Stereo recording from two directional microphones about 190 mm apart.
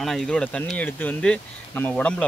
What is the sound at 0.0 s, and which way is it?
Speech, centre (ahead or behind).